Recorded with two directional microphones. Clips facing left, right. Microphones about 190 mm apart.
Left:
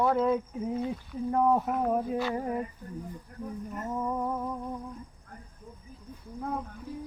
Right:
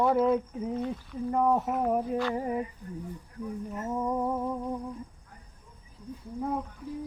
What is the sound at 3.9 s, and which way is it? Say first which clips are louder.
Humming: right 2 dB; 15° right (ahead or behind).